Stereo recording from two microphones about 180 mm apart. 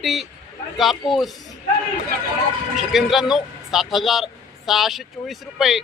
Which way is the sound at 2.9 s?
Centre (ahead or behind).